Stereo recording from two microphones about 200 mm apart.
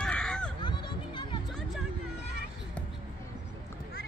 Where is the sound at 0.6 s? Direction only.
25° left (ahead or behind).